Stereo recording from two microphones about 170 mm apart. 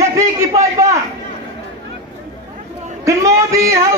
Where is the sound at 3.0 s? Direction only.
15° right (ahead or behind).